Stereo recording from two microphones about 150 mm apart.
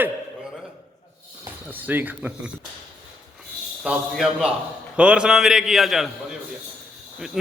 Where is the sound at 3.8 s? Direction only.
5° right (ahead or behind).